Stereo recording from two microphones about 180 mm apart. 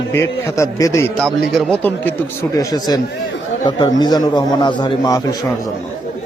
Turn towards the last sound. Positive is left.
turn(degrees=20)  # may be behind; listen again after turning